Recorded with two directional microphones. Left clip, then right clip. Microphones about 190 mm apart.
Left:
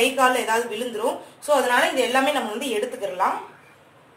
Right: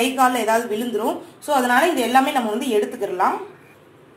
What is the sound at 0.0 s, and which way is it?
A woman's voice, 30° right (ahead or behind).